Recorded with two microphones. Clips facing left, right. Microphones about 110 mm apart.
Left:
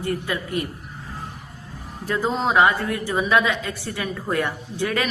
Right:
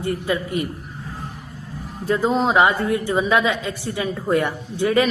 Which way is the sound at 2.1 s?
20° right (ahead or behind).